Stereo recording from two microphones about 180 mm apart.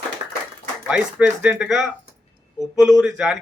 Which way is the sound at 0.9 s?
5° right (ahead or behind).